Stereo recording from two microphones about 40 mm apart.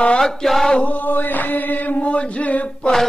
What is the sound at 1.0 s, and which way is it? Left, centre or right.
Chant, left.